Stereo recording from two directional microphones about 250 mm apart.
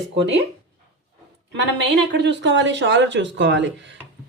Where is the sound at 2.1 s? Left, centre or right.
Right.